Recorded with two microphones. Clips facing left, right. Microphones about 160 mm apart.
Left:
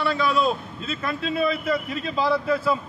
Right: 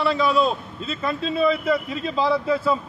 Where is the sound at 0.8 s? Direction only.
30° right (ahead or behind).